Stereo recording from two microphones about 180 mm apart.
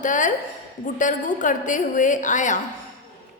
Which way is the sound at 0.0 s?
45° left (ahead or behind).